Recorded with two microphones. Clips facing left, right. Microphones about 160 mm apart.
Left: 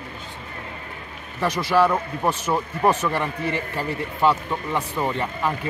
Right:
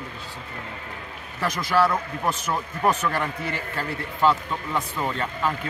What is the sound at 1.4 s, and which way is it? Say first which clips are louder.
A man's voice: left 3 dB; 10° left (ahead or behind).